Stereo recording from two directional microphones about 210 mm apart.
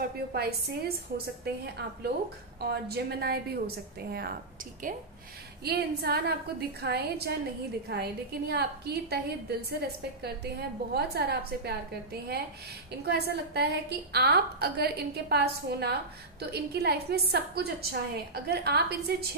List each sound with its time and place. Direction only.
0.0 s a woman's voice: 50° right (ahead or behind)
5.6 s a woman's voice: 50° right (ahead or behind)